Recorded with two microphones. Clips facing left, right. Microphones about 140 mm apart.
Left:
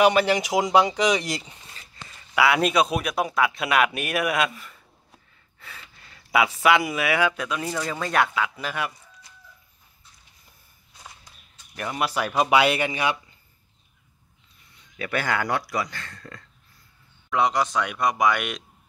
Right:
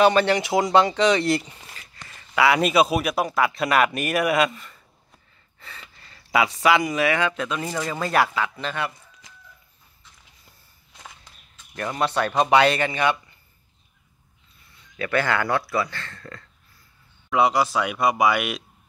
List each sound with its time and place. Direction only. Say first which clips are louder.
0.0 s speech: right 1 dB; 10° left (ahead or behind)
2.3 s speech: right 2 dB; centre (ahead or behind)
8.5 s speech: right 1 dB; 10° left (ahead or behind)
11.7 s speech: right 3 dB; 10° left (ahead or behind)
15.0 s speech: right 3 dB; 15° left (ahead or behind)
17.3 s speech: right 3 dB; 5° right (ahead or behind)